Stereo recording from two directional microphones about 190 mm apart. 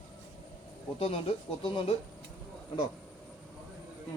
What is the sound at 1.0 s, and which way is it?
Speech, 30° left (ahead or behind).